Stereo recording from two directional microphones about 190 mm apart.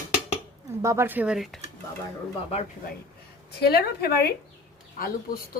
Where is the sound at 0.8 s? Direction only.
15° right (ahead or behind).